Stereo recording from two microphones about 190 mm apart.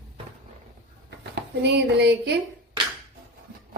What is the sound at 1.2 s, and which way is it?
Speech, 60° right (ahead or behind).